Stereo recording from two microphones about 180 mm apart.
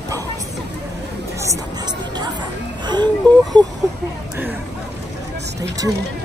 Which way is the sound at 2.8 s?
25° right (ahead or behind).